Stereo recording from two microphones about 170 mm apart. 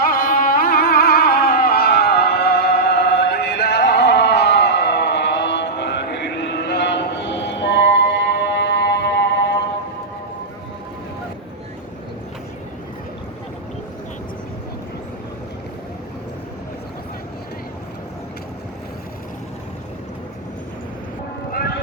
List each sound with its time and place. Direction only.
0.0 s music: 60° left (ahead or behind); by 9.6 s 85° left